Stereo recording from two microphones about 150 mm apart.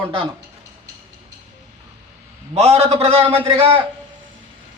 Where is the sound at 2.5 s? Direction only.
45° right (ahead or behind).